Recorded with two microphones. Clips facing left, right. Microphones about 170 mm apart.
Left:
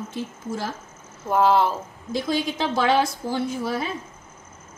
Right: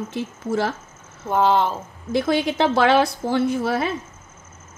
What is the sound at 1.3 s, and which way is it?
Speech, 5° left (ahead or behind).